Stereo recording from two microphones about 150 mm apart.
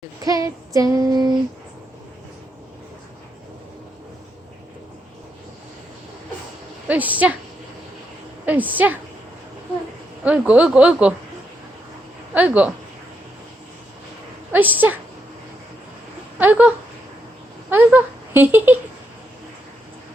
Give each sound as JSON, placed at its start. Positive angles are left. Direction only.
{"t": 0.2, "sound": "child singing", "side_deg": -25}
{"t": 6.8, "sound": "a woman's voice", "side_deg": -10}
{"t": 8.4, "sound": "speech", "side_deg": -10}
{"t": 10.2, "sound": "speech", "side_deg": -10}
{"t": 12.3, "sound": "speech", "side_deg": -10}
{"t": 14.5, "sound": "speech", "side_deg": -10}
{"t": 16.4, "sound": "speech", "side_deg": -10}
{"t": 17.7, "sound": "a sound", "side_deg": -10}